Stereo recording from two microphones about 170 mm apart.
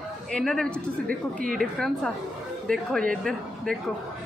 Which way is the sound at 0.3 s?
5° left (ahead or behind).